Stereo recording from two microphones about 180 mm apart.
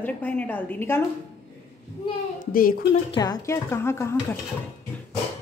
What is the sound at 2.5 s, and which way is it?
Speech, 50° left (ahead or behind).